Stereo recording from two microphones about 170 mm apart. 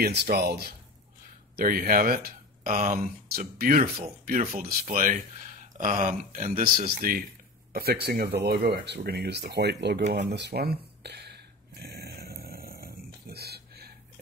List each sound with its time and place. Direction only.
0.0 s speech: 70° right (ahead or behind); by 7.2 s 55° right (ahead or behind)
7.7 s speech: 65° right (ahead or behind)
10.1 s a sound: 85° right; by 13.9 s 65° right (ahead or behind)